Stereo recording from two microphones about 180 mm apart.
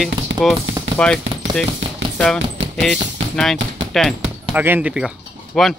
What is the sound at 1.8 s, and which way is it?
Music, 90° right.